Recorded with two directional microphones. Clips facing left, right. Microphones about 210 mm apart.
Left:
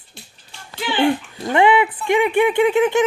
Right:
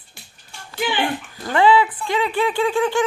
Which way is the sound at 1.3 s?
20° left (ahead or behind).